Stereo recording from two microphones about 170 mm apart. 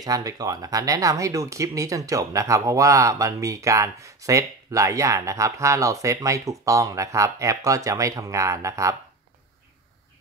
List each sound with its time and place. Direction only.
0.0 s speech: 20° right (ahead or behind)